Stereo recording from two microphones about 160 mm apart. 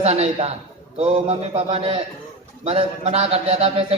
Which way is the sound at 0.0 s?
40° right (ahead or behind).